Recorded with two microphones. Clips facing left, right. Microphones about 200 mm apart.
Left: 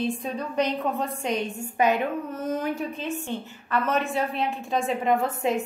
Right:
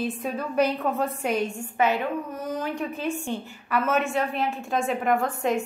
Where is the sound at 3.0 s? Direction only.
10° right (ahead or behind).